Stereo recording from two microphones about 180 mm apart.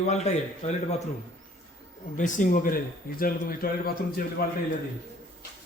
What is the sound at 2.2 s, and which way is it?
A man's voice, 45° left (ahead or behind).